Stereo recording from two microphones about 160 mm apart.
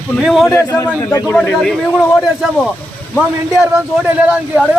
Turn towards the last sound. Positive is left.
turn(degrees=-5)  # may be behind; listen again after turning